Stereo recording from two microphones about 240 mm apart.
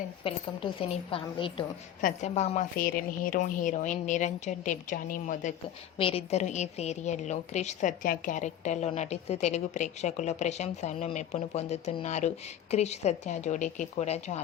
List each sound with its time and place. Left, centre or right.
0.3 s a woman's voice: left